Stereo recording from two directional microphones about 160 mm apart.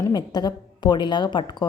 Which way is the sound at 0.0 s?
25° left (ahead or behind).